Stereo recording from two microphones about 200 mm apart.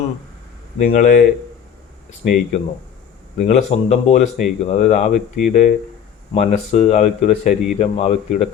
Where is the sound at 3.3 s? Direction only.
35° left (ahead or behind).